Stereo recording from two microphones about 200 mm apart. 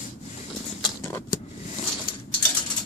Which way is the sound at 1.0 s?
15° left (ahead or behind).